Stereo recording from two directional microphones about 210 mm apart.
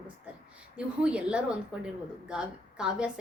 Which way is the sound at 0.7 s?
5° right (ahead or behind).